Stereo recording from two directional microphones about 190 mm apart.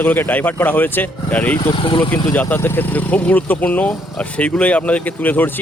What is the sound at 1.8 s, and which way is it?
Speech, 25° left (ahead or behind).